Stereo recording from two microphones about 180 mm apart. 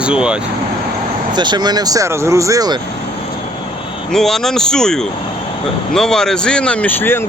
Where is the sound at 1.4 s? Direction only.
25° right (ahead or behind).